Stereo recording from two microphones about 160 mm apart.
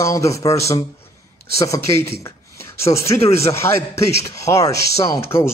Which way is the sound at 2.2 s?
15° left (ahead or behind).